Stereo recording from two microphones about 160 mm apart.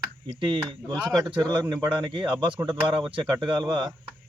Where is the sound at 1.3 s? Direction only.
30° right (ahead or behind).